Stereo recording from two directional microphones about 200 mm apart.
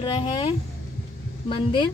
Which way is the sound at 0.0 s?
25° left (ahead or behind).